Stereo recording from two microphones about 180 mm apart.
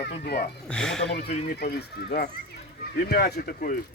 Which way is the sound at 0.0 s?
60° left (ahead or behind).